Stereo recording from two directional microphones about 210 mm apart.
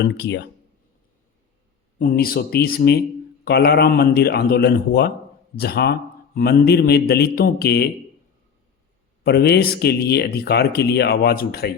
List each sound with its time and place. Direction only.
0.0 s speech: 55° left (ahead or behind)
2.0 s speech: 45° left (ahead or behind)
9.2 s speech: 50° left (ahead or behind)